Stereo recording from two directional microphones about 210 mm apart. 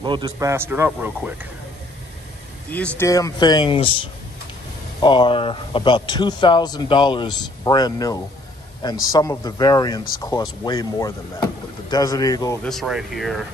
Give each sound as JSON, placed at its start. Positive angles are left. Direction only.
{"t": 0.0, "sound": "a man's voice", "side_deg": -20}
{"t": 2.7, "sound": "a man's voice", "side_deg": 5}
{"t": 12.6, "sound": "speech", "side_deg": 0}